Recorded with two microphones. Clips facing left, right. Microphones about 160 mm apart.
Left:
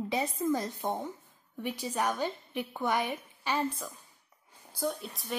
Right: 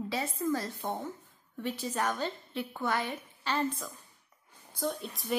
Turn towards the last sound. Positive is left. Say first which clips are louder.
# right 2 dB
turn(degrees=0)  # may be behind; listen again after turning